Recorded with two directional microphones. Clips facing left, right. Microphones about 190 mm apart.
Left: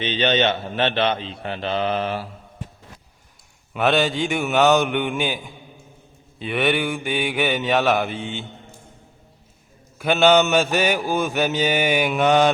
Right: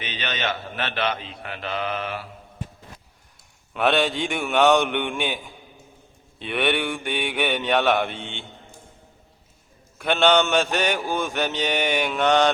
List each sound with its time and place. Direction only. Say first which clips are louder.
0.0 s a man's voice: left 9 dB; 30° left (ahead or behind)
3.8 s mantra: left 2 dB; centre (ahead or behind)
6.4 s mantra: left 2 dB; centre (ahead or behind)
10.0 s mantra: left 3 dB; 5° left (ahead or behind)